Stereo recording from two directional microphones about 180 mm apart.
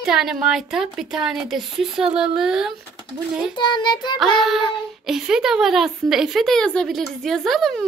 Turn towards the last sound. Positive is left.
turn(degrees=0)  # may be behind; listen again after turning